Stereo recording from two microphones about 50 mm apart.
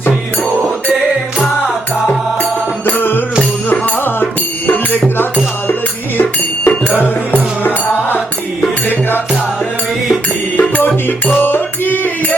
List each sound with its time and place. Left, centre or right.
2.0 s music: left
10.6 s music: left